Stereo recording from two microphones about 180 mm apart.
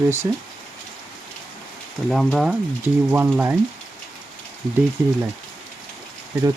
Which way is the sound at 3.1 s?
10° right (ahead or behind).